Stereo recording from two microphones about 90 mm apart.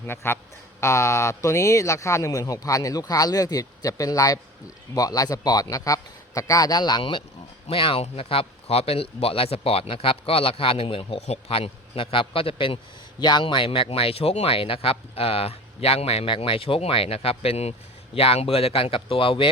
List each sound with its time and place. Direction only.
0.1 s a man's voice: 25° left (ahead or behind); by 7.0 s 50° left (ahead or behind)
7.0 s speech: 70° left (ahead or behind)
7.7 s speech: 90° left
13.1 s speech: 55° left (ahead or behind); by 19.5 s 80° left